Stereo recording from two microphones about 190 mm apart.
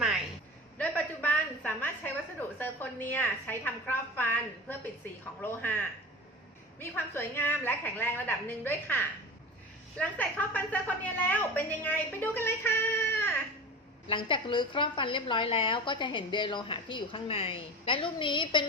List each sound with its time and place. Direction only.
0.8 s a sound: 10° left (ahead or behind)
2.6 s a woman's voice: 10° left (ahead or behind)
10.0 s a woman's voice: 10° left (ahead or behind)
14.1 s a woman's voice: 25° left (ahead or behind)